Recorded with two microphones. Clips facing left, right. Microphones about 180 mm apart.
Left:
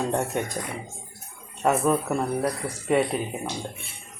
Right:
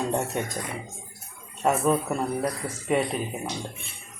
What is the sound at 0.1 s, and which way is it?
Speech, centre (ahead or behind).